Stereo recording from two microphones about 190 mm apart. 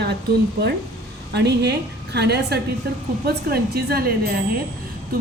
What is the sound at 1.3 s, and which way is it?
A woman's voice, 60° right (ahead or behind).